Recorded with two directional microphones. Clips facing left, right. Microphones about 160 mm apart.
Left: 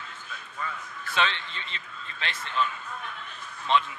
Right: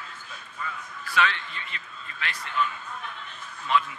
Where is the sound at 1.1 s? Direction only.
25° left (ahead or behind).